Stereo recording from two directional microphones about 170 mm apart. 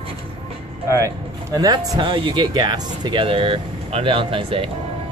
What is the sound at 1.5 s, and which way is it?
Speech, 25° right (ahead or behind).